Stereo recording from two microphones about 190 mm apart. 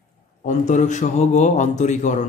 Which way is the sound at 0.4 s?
40° left (ahead or behind).